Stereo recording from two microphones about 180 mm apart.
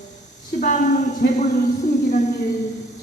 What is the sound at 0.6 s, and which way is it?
Speech, 45° left (ahead or behind).